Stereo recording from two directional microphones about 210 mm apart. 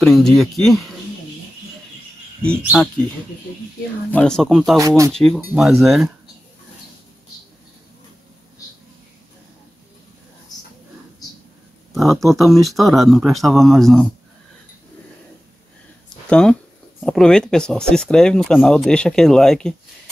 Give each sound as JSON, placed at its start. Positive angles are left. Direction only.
{"t": 0.0, "sound": "speech", "side_deg": 0}
{"t": 4.1, "sound": "speech", "side_deg": 5}
{"t": 4.7, "sound": "speech", "side_deg": -15}
{"t": 5.1, "sound": "speech", "side_deg": 0}
{"t": 11.9, "sound": "speech", "side_deg": 0}
{"t": 16.3, "sound": "speech", "side_deg": 5}